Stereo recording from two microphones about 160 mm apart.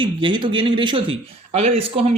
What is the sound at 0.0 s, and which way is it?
A man's voice, 30° right (ahead or behind).